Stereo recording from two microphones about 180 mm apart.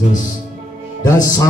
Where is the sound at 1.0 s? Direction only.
20° left (ahead or behind).